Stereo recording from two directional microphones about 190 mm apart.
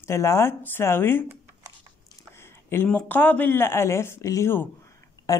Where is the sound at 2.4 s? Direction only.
10° left (ahead or behind).